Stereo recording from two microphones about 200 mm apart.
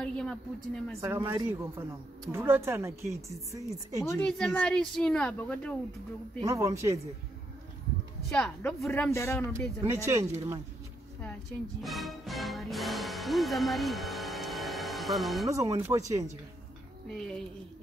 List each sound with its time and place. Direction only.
0.0 s a sound: 5° left (ahead or behind)
1.0 s speech: 15° right (ahead or behind)
4.0 s a woman's voice: 10° left (ahead or behind)
6.4 s speech: 15° right (ahead or behind)
8.3 s speech: 5° left (ahead or behind)
9.8 s speech: 15° right (ahead or behind)
11.8 s speech: centre (ahead or behind)
15.5 s speech: 15° right (ahead or behind)
17.1 s a woman's voice: centre (ahead or behind)